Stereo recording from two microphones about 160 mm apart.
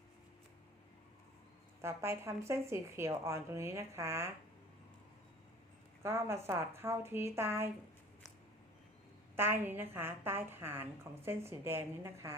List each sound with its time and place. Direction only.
1.8 s speech: 15° right (ahead or behind)
6.0 s speech: 15° right (ahead or behind)
9.3 s speech: 15° right (ahead or behind)